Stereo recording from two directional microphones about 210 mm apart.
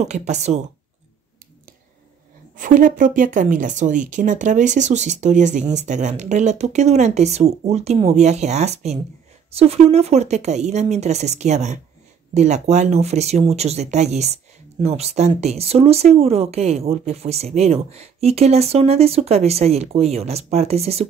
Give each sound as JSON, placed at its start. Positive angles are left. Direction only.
{"t": 0.0, "sound": "speech", "side_deg": -35}
{"t": 2.5, "sound": "speech", "side_deg": -40}